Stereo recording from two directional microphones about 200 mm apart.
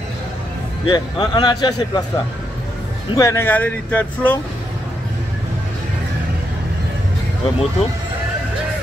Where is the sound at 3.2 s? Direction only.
15° left (ahead or behind).